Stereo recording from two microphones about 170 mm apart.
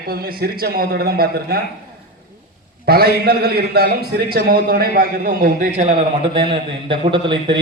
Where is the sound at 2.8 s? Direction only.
65° right (ahead or behind).